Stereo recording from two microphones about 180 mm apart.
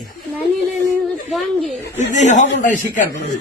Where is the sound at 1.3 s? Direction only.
Centre (ahead or behind).